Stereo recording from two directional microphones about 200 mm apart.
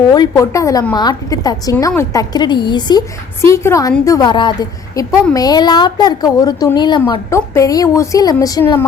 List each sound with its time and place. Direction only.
0.1 s a woman's voice: 15° left (ahead or behind)